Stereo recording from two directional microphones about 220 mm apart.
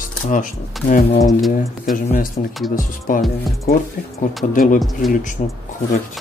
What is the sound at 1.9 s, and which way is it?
Speech, 40° left (ahead or behind).